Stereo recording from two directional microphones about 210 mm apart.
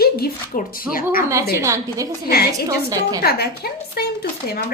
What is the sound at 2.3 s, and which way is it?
A woman's voice, 50° left (ahead or behind).